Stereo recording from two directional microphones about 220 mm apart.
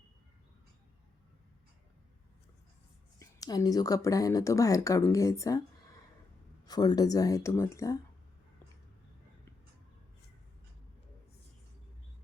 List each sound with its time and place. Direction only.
3.2 s speech: 15° left (ahead or behind)
6.7 s speech: 15° left (ahead or behind)